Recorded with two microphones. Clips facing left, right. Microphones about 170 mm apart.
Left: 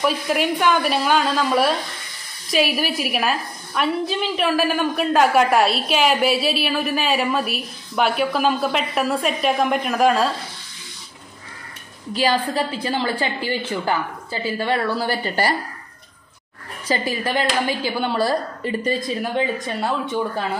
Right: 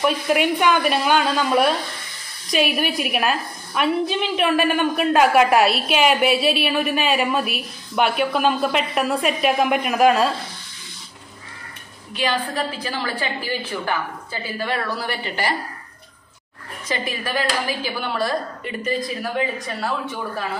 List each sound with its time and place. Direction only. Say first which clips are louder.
0.0 s a woman's voice: right 1 dB; centre (ahead or behind)
12.2 s a woman's voice: left 3 dB; 30° left (ahead or behind)
16.8 s a woman's voice: left 4 dB; 30° left (ahead or behind)